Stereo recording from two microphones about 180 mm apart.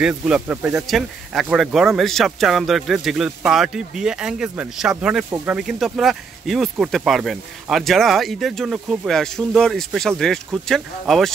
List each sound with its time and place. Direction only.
0.0 s speech: 5° right (ahead or behind)